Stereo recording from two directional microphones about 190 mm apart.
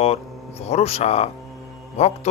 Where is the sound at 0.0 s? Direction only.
35° left (ahead or behind).